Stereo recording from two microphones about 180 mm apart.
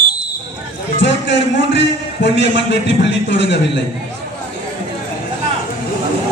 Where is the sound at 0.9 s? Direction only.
80° left.